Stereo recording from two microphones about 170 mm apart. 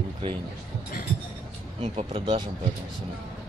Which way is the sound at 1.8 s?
35° right (ahead or behind).